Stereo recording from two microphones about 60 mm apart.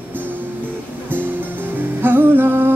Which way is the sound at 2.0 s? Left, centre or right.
Right.